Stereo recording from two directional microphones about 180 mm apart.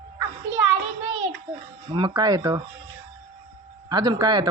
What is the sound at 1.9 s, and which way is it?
Speech, 25° right (ahead or behind).